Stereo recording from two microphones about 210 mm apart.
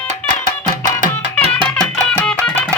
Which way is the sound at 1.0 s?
30° right (ahead or behind).